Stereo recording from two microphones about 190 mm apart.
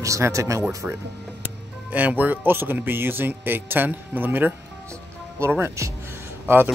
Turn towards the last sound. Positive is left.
turn(degrees=-10)  # may be behind; listen again after turning